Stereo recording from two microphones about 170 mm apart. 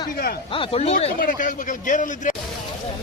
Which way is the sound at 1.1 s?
55° left (ahead or behind).